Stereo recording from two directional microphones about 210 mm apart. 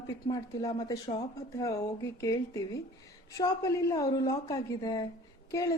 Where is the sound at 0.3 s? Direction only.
20° left (ahead or behind).